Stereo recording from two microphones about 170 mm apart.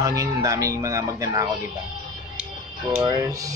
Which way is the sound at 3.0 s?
20° right (ahead or behind).